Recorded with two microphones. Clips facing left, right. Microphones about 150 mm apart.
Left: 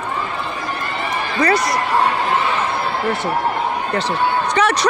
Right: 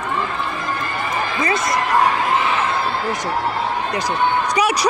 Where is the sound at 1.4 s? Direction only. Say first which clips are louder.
Left 5 dB; 20° right (ahead or behind).